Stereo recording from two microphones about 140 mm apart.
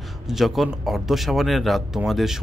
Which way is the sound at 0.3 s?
Centre (ahead or behind).